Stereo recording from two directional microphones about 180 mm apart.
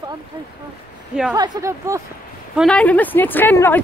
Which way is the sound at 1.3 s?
20° right (ahead or behind).